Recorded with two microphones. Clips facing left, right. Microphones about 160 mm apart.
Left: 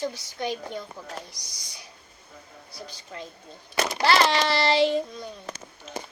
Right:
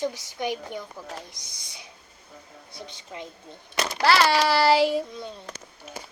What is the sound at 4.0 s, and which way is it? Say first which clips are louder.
A child's voice: right 2 dB; 5° right (ahead or behind).